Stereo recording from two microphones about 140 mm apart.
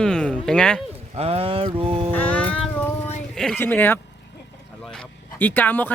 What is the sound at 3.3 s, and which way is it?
Speech, 5° left (ahead or behind).